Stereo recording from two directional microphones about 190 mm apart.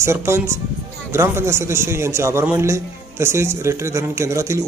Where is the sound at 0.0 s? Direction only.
15° right (ahead or behind).